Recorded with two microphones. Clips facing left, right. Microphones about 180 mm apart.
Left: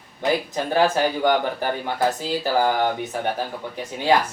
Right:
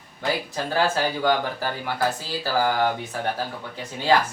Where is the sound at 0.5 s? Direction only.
20° left (ahead or behind).